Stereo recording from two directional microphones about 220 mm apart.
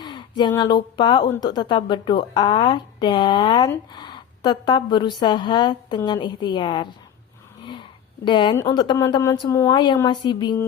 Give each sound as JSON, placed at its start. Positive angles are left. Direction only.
{"t": 0.0, "sound": "speech", "side_deg": 20}
{"t": 7.6, "sound": "a sound", "side_deg": 20}
{"t": 8.6, "sound": "speech", "side_deg": 20}